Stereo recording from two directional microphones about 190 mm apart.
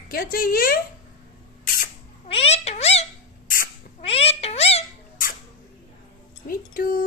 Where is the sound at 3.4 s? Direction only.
50° left (ahead or behind).